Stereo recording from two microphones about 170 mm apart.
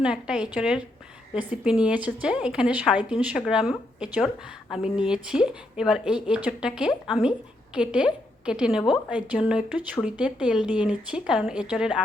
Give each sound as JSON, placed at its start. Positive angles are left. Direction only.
{"t": 0.0, "sound": "a woman's voice", "side_deg": -5}